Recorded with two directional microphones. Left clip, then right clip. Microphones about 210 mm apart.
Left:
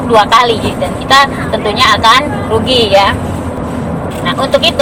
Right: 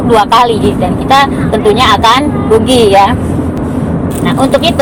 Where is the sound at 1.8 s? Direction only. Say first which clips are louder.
Left 2 dB; 30° right (ahead or behind).